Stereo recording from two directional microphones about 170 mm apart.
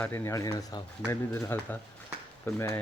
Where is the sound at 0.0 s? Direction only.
15° left (ahead or behind).